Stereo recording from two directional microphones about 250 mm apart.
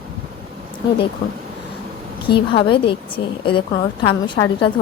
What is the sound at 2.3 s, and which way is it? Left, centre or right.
Speech, centre.